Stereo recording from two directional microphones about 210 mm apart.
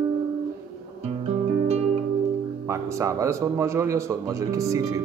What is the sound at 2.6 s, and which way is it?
Speech, 15° right (ahead or behind).